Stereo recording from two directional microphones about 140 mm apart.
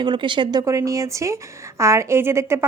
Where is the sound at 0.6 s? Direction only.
20° right (ahead or behind).